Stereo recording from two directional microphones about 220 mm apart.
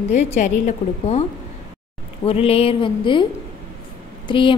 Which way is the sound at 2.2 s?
25° left (ahead or behind).